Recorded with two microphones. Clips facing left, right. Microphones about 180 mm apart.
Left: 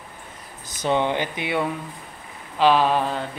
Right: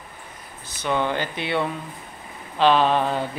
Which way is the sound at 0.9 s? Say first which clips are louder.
Left 2 dB; 20° left (ahead or behind).